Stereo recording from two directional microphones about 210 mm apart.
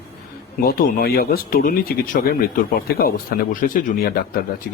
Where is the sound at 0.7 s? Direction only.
45° left (ahead or behind).